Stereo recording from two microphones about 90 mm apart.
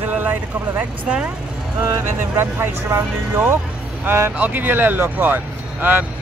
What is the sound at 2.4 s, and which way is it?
Speech, 30° right (ahead or behind).